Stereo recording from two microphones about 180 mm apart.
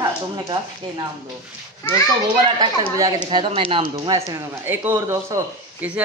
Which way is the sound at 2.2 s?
25° right (ahead or behind).